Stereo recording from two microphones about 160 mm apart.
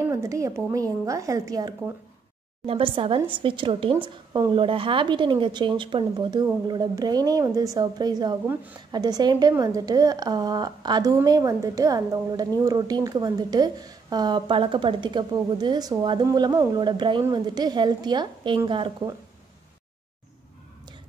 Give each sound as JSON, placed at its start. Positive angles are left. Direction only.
{"t": 0.1, "sound": "a woman's voice", "side_deg": -20}
{"t": 2.6, "sound": "a woman's voice", "side_deg": -35}